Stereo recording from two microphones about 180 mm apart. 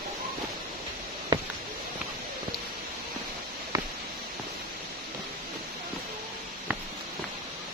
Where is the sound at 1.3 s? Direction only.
25° right (ahead or behind).